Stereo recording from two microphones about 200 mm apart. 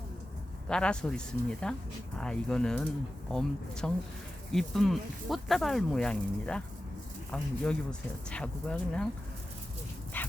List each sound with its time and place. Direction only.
0.7 s speech: 5° left (ahead or behind)
10.1 s dog: 10° left (ahead or behind)